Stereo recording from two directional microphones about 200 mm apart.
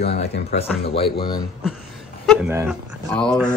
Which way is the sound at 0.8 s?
25° left (ahead or behind).